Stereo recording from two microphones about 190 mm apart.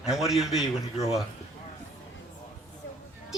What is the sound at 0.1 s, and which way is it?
Speech, centre (ahead or behind).